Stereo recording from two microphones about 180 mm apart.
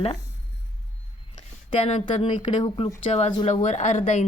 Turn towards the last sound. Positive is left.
turn(degrees=40)  # may be behind; listen again after turning